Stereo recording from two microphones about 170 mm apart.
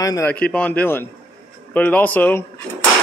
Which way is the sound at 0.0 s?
20° left (ahead or behind).